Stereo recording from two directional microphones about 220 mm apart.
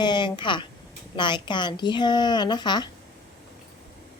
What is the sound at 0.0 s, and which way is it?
Speech, 20° left (ahead or behind).